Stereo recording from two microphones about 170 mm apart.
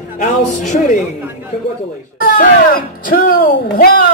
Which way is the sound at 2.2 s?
55° left (ahead or behind).